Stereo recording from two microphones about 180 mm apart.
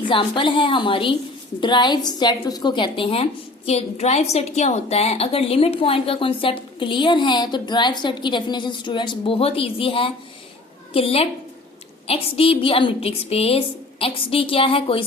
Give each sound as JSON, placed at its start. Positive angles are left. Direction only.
{"t": 0.1, "sound": "a woman's voice", "side_deg": 25}